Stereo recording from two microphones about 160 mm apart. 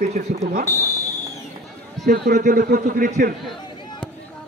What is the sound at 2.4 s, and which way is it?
Speech, 65° right (ahead or behind).